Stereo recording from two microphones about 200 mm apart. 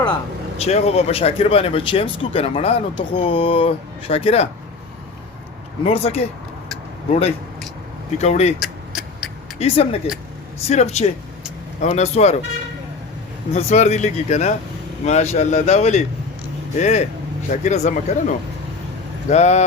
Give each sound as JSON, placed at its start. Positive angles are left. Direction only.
{"t": 0.6, "sound": "speech", "side_deg": 30}
{"t": 5.8, "sound": "speech", "side_deg": 30}
{"t": 8.6, "sound": "vehicle", "side_deg": 0}
{"t": 9.6, "sound": "speech", "side_deg": 30}
{"t": 13.5, "sound": "speech", "side_deg": 35}